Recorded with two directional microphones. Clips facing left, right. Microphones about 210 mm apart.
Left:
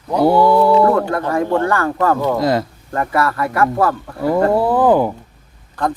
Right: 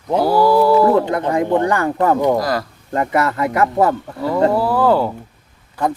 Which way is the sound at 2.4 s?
25° left (ahead or behind).